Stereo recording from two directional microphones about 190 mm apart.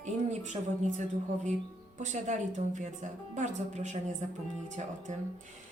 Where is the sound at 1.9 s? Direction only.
40° right (ahead or behind).